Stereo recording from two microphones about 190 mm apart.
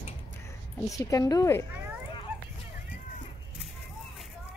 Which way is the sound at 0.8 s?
15° left (ahead or behind).